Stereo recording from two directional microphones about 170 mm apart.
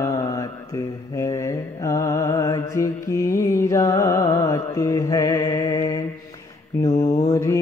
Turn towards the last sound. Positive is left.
turn(degrees=35)  # may be behind; listen again after turning